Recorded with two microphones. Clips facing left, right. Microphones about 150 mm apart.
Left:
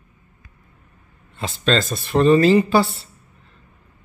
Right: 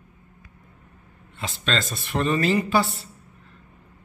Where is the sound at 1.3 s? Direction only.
35° left (ahead or behind).